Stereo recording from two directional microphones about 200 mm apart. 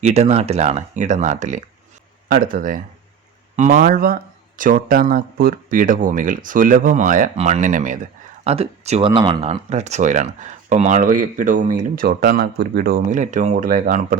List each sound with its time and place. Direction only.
0.0 s speech: 35° right (ahead or behind)